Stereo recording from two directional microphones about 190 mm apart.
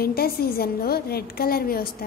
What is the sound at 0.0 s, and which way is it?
A woman's voice, 55° left (ahead or behind).